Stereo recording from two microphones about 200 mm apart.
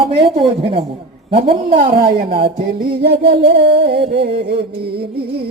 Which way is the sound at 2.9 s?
55° right (ahead or behind).